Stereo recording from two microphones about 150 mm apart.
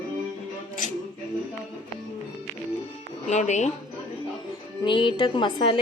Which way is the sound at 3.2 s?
50° left (ahead or behind).